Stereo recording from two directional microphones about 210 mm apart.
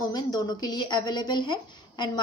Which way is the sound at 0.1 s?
20° left (ahead or behind).